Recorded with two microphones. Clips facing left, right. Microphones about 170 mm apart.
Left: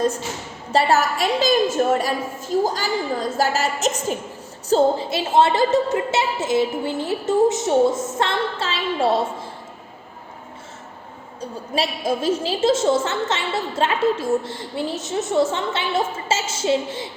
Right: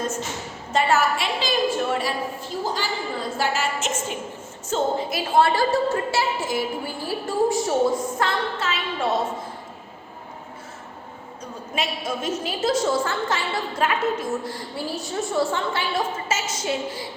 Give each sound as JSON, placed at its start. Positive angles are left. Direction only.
{"t": 0.7, "sound": "a woman's voice", "side_deg": 35}
{"t": 3.3, "sound": "music", "side_deg": 40}
{"t": 4.7, "sound": "a woman's voice", "side_deg": 30}
{"t": 11.3, "sound": "a woman's voice", "side_deg": 35}